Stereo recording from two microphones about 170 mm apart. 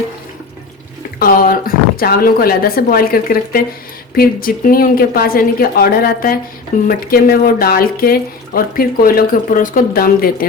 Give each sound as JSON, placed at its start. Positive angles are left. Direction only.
{"t": 1.2, "sound": "speech", "side_deg": 55}